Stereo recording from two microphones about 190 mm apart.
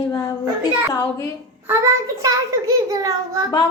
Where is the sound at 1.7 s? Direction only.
15° right (ahead or behind).